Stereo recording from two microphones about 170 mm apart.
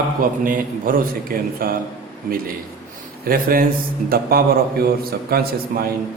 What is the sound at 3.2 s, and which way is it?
Mantra, 60° right (ahead or behind).